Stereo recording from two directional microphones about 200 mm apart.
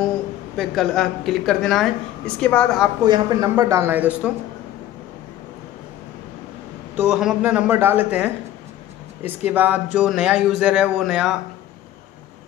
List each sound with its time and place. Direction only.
0.6 s a woman's voice: centre (ahead or behind)
3.1 s speech: 20° right (ahead or behind)
7.0 s speech: 5° right (ahead or behind)
9.5 s a woman's voice: 10° right (ahead or behind)